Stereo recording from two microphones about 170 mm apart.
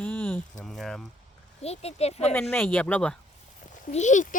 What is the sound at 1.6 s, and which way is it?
Speech, 40° left (ahead or behind).